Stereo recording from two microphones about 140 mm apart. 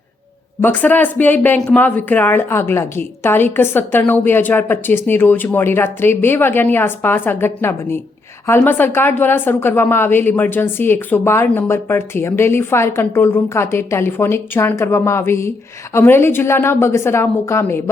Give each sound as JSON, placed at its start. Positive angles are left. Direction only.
{"t": 0.6, "sound": "a woman's voice", "side_deg": 10}